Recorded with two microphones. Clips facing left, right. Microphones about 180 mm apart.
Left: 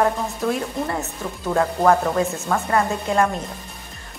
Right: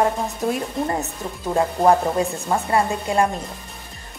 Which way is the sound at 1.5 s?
20° right (ahead or behind).